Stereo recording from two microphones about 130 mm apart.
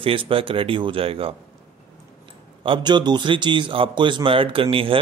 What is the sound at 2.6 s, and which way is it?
A man's voice, 40° right (ahead or behind).